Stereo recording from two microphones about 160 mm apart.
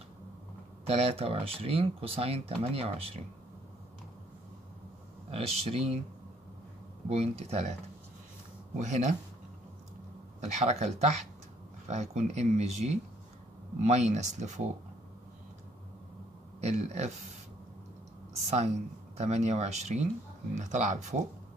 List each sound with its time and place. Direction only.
0.8 s speech: 40° right (ahead or behind)
5.3 s speech: 40° right (ahead or behind)
7.1 s speech: 40° right (ahead or behind)
8.7 s speech: 50° right (ahead or behind)
10.4 s speech: 45° right (ahead or behind)
16.6 s speech: 45° right (ahead or behind)
19.1 s speech: 45° right (ahead or behind)